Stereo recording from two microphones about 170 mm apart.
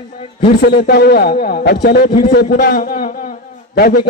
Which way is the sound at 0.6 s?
60° left (ahead or behind).